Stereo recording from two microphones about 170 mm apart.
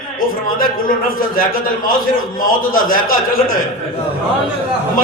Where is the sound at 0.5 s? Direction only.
55° left (ahead or behind).